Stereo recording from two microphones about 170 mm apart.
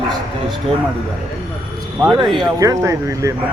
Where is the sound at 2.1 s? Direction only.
25° right (ahead or behind).